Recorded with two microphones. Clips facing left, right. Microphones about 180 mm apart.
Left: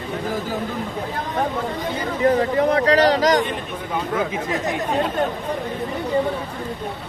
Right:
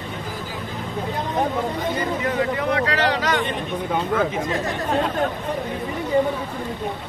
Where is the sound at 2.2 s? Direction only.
40° left (ahead or behind).